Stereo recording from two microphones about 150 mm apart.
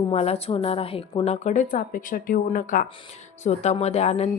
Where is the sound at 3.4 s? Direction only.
50° left (ahead or behind).